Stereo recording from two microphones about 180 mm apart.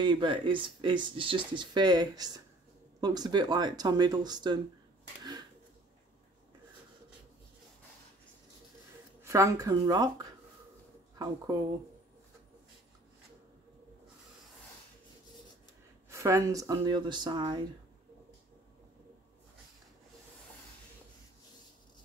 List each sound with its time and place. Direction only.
0.0 s speech: 25° right (ahead or behind)
9.2 s speech: 15° right (ahead or behind)
16.1 s speech: 15° right (ahead or behind)